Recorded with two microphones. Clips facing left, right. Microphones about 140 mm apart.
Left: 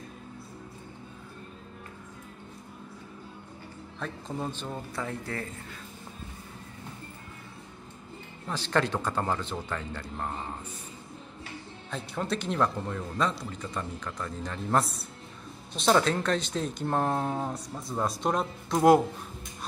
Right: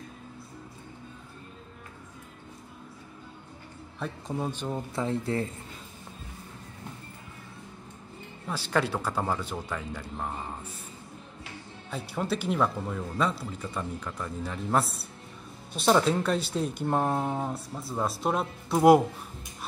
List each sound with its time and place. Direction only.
4.0 s speech: 10° right (ahead or behind)
4.9 s speech: 25° right (ahead or behind)
8.5 s speech: 10° right (ahead or behind)
11.9 s speech: 5° right (ahead or behind)